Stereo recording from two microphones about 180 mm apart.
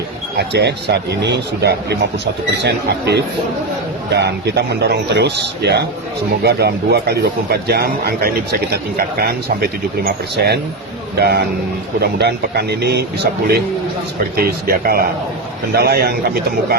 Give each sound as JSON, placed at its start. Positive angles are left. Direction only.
{"t": 0.3, "sound": "a man's voice", "side_deg": -65}
{"t": 14.3, "sound": "speech", "side_deg": -55}